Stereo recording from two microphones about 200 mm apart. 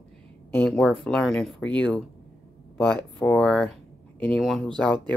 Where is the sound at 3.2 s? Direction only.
5° left (ahead or behind).